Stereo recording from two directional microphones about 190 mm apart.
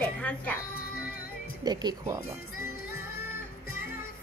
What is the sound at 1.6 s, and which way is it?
Speech, 20° right (ahead or behind).